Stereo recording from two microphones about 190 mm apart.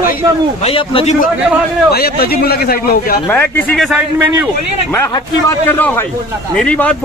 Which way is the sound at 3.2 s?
10° left (ahead or behind).